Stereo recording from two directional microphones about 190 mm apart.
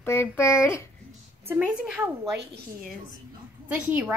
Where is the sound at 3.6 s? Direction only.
5° right (ahead or behind).